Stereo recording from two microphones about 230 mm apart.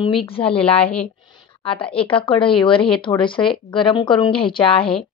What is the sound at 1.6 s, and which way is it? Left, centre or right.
Speech, left.